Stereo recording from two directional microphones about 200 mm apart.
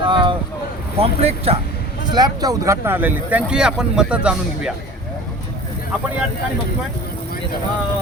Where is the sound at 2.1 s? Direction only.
20° right (ahead or behind).